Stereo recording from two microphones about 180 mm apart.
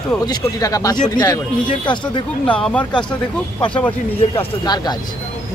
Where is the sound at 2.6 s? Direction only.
5° left (ahead or behind).